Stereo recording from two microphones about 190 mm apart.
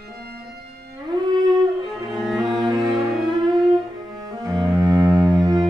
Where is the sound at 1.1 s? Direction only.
20° right (ahead or behind).